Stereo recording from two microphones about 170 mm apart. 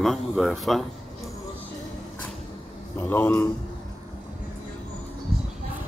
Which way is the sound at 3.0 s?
10° left (ahead or behind).